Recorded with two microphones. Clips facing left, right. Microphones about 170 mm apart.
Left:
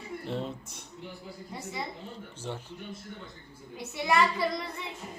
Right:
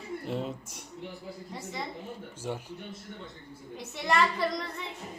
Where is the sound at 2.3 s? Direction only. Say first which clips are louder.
Right 3 dB; 10° right (ahead or behind).